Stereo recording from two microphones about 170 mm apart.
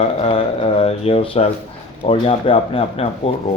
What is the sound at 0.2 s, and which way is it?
Speech, 35° left (ahead or behind).